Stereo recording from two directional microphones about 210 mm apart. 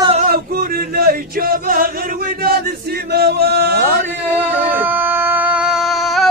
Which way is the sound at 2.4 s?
45° right (ahead or behind).